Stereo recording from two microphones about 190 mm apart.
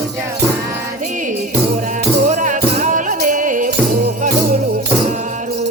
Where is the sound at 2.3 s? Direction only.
40° right (ahead or behind).